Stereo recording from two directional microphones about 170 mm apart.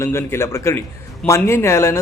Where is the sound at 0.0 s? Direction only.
15° left (ahead or behind).